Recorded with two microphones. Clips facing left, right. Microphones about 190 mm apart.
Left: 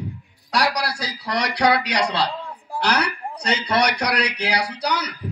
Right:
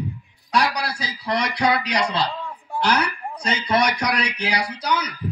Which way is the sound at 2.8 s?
70° left (ahead or behind).